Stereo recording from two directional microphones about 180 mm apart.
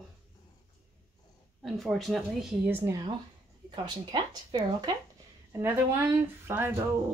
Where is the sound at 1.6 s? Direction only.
Centre (ahead or behind); by 4.9 s 25° right (ahead or behind).